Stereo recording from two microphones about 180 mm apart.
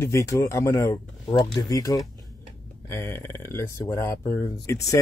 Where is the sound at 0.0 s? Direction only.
15° left (ahead or behind).